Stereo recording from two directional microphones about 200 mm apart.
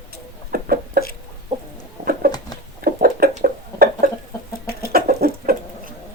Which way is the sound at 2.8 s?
45° right (ahead or behind).